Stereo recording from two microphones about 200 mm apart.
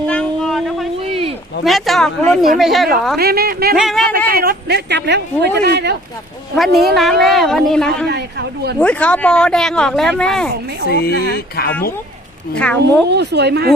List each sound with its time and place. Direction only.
0.1 s a sound: 5° left (ahead or behind)
1.6 s speech: centre (ahead or behind)
3.2 s a woman's voice: 50° right (ahead or behind)
3.8 s speech: centre (ahead or behind)
4.3 s speech: 50° right (ahead or behind)
6.7 s speech: centre (ahead or behind)
8.0 s speech: 55° right (ahead or behind)
8.8 s speech: 5° left (ahead or behind)
10.8 s speech: 50° left (ahead or behind)
12.5 s speech: 5° left (ahead or behind)
13.1 s speech: 55° right (ahead or behind)